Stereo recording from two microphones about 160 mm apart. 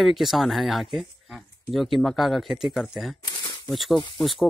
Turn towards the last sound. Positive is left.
turn(degrees=0)  # may be behind; listen again after turning